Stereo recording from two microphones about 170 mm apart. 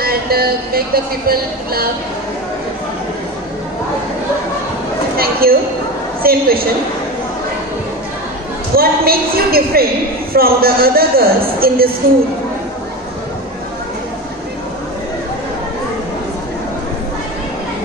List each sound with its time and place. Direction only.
0.0 s music: 60° right (ahead or behind)
5.1 s music: 60° right (ahead or behind)
8.7 s music: 60° right (ahead or behind)